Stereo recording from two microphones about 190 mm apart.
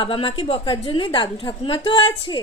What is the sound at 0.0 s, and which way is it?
A woman's voice, 30° left (ahead or behind).